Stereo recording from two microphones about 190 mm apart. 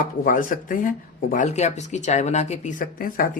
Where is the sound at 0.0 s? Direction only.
45° left (ahead or behind).